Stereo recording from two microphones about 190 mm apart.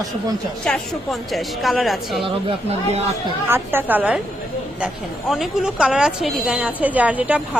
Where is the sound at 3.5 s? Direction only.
10° right (ahead or behind).